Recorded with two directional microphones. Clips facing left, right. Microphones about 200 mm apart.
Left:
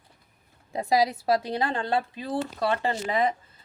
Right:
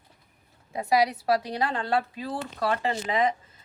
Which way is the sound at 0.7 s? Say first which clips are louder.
Even; 25° left (ahead or behind).